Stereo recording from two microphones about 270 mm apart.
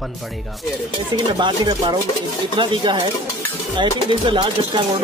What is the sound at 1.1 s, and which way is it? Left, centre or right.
Speech, centre.